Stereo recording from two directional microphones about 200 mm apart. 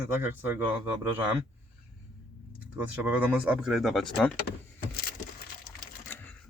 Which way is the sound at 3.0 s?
5° right (ahead or behind).